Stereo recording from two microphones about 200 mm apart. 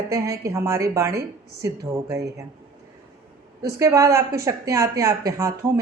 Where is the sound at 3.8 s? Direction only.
15° right (ahead or behind).